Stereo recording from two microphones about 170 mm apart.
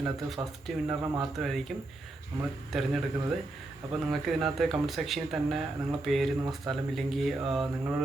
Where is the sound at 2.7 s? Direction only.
Centre (ahead or behind).